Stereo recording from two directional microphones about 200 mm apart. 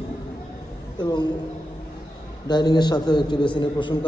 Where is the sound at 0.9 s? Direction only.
20° left (ahead or behind).